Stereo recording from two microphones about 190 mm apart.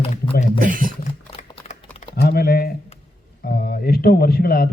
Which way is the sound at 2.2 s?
55° left (ahead or behind).